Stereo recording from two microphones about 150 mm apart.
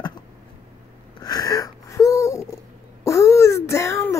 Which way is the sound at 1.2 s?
25° left (ahead or behind).